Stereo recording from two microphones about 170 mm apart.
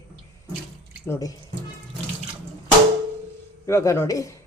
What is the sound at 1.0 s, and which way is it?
Speech, 20° left (ahead or behind).